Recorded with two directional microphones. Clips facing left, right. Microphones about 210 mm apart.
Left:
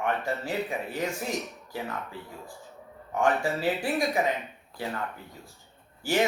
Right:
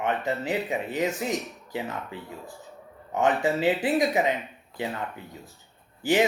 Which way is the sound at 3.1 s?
20° right (ahead or behind).